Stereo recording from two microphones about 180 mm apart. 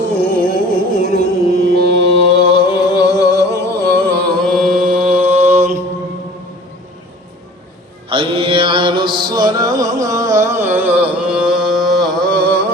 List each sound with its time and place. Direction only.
0.3 s music: 55° left (ahead or behind)
1.0 s music: 60° right (ahead or behind)
2.5 s music: 25° left (ahead or behind); by 5.3 s 5° right (ahead or behind)
5.3 s mantra: 40° right (ahead or behind)
8.1 s music: 30° right (ahead or behind); by 12.5 s 5° left (ahead or behind)